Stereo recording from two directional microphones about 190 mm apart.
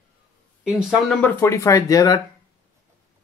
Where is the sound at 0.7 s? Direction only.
Centre (ahead or behind).